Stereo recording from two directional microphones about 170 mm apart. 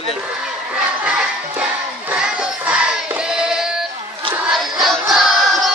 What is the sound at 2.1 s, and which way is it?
Crowd, 5° right (ahead or behind).